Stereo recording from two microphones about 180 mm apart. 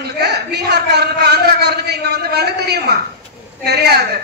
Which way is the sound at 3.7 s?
60° right (ahead or behind).